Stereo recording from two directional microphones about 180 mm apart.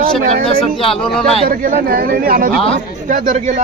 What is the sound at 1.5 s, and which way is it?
A man's voice, 50° right (ahead or behind).